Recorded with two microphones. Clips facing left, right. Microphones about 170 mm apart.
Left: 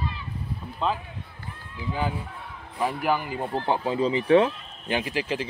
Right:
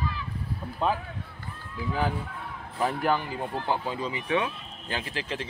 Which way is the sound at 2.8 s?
5° left (ahead or behind).